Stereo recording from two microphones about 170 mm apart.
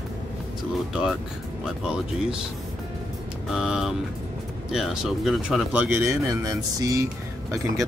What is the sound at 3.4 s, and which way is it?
Speech, 5° right (ahead or behind).